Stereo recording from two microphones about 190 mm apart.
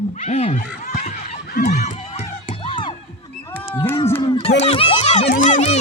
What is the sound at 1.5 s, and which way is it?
Run, 55° left (ahead or behind).